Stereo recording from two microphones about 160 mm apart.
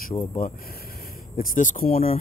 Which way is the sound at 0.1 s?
35° left (ahead or behind).